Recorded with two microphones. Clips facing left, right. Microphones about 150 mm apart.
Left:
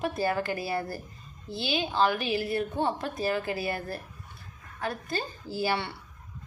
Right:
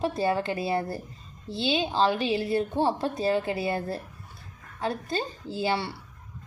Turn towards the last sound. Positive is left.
turn(degrees=-25)  # may be behind; listen again after turning